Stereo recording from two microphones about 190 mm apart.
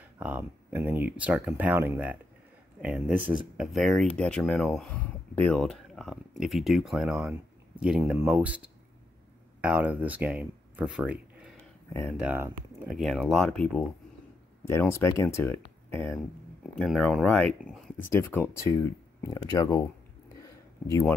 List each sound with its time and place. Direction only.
0.2 s speech: 10° right (ahead or behind)
13.0 s speech: centre (ahead or behind)
18.1 s speech: 10° left (ahead or behind)
20.8 s speech: 15° left (ahead or behind)